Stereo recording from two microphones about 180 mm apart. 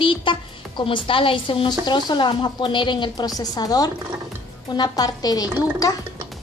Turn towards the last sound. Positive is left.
turn(degrees=20)  # may be behind; listen again after turning